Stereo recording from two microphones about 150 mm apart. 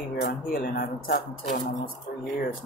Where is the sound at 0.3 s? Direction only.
80° left.